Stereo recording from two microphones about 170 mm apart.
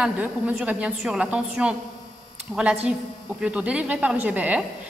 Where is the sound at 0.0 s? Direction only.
5° right (ahead or behind).